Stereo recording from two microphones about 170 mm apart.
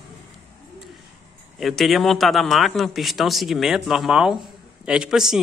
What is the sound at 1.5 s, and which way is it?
Speech, centre (ahead or behind).